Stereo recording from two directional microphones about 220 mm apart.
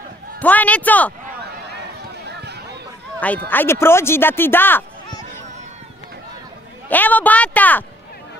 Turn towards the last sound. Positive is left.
turn(degrees=5)  # may be behind; listen again after turning